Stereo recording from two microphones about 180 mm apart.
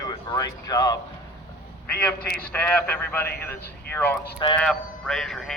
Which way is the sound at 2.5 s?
10° left (ahead or behind).